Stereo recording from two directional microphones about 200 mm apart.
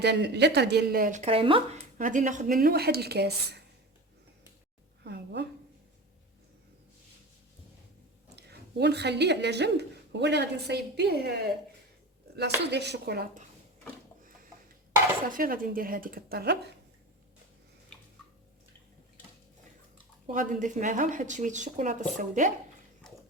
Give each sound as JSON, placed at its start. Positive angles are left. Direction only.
{"t": 0.0, "sound": "speech", "side_deg": -55}
{"t": 2.0, "sound": "speech", "side_deg": -40}
{"t": 5.0, "sound": "a sound", "side_deg": -55}
{"t": 8.4, "sound": "a woman's voice", "side_deg": -55}
{"t": 12.7, "sound": "a woman's voice", "side_deg": -55}
{"t": 15.3, "sound": "speech", "side_deg": -45}
{"t": 20.2, "sound": "speech", "side_deg": -40}
{"t": 23.0, "sound": "a sound", "side_deg": 5}